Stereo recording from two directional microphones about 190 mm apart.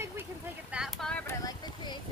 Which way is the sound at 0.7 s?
Centre (ahead or behind).